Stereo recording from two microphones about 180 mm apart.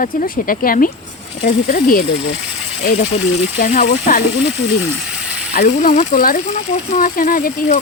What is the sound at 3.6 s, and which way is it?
Speech, 50° left (ahead or behind).